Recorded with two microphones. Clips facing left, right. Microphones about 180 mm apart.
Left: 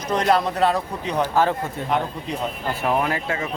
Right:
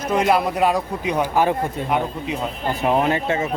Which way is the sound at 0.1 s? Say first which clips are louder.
Right 1 dB; 10° right (ahead or behind).